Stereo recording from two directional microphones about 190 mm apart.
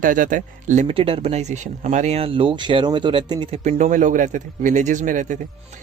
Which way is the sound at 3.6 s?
40° right (ahead or behind).